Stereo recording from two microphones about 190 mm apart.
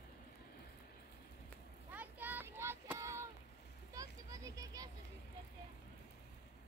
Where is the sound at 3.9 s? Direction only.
15° right (ahead or behind).